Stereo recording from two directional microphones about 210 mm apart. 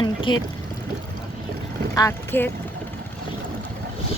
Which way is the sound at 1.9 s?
15° left (ahead or behind).